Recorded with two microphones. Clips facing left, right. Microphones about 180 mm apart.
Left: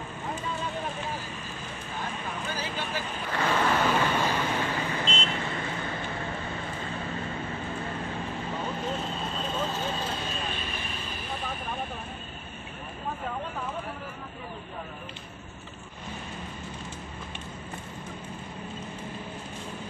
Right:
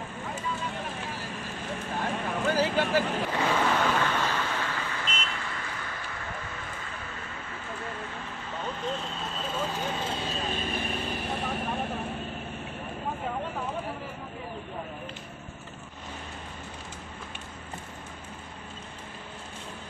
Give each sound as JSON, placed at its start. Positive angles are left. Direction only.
{"t": 2.2, "sound": "vehicle", "side_deg": -65}
{"t": 3.4, "sound": "waves", "side_deg": -5}
{"t": 3.7, "sound": "vehicle", "side_deg": 10}
{"t": 9.5, "sound": "vehicle", "side_deg": -10}